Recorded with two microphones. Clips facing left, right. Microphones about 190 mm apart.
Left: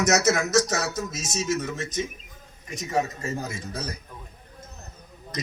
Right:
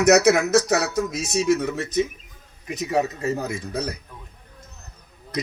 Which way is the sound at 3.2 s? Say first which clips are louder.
Right 6 dB; 65° right (ahead or behind).